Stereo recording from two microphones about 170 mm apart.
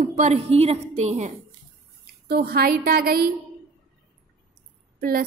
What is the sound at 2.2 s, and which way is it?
A woman's voice, 65° right (ahead or behind).